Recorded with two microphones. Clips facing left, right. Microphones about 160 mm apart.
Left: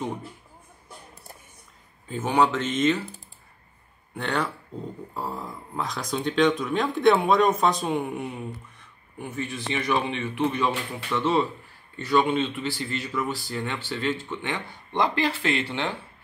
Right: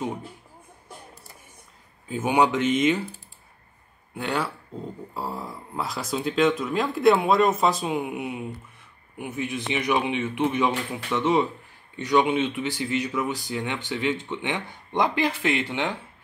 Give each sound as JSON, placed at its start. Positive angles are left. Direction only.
{"t": 2.0, "sound": "speech", "side_deg": -10}
{"t": 4.1, "sound": "speech", "side_deg": -5}